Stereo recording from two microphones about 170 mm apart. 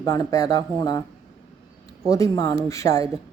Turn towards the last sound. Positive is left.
turn(degrees=20)  # may be behind; listen again after turning